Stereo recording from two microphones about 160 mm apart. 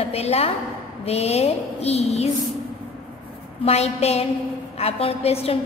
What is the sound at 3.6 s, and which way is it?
A woman's voice, 40° left (ahead or behind).